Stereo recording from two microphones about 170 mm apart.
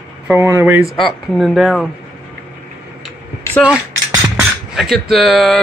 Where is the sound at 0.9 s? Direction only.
Centre (ahead or behind).